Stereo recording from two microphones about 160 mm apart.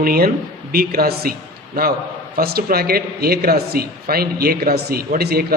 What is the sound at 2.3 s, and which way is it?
Speech, 75° right (ahead or behind).